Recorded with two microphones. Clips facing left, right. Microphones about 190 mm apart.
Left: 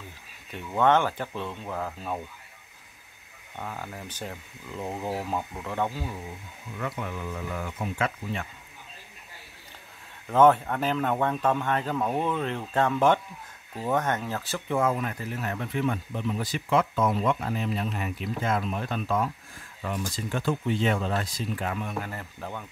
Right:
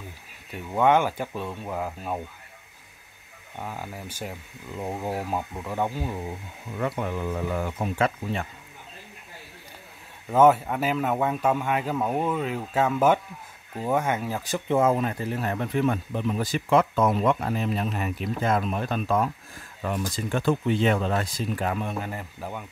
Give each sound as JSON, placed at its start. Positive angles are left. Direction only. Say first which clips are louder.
{"t": 0.7, "sound": "speech", "louder": "right 2 dB", "side_deg": -10}
{"t": 3.5, "sound": "speech", "louder": "right 1 dB", "side_deg": -10}
{"t": 6.8, "sound": "speech", "louder": "right 5 dB", "side_deg": -35}
{"t": 10.3, "sound": "speech", "louder": "right 1 dB", "side_deg": -10}
{"t": 22.0, "sound": "speech", "louder": "right 3 dB", "side_deg": -15}